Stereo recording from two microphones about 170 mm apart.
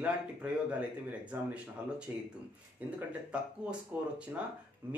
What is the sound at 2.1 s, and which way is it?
Speech, 15° right (ahead or behind).